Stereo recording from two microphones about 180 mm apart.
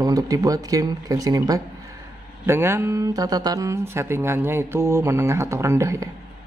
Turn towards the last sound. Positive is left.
turn(degrees=-15)  # may be behind; listen again after turning